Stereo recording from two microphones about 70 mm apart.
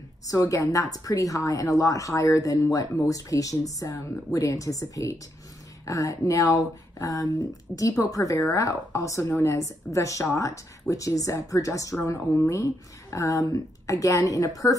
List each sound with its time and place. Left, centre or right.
0.3 s a woman's voice: left